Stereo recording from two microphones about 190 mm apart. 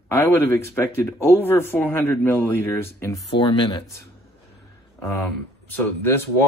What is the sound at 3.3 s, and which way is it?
Speech, 25° left (ahead or behind).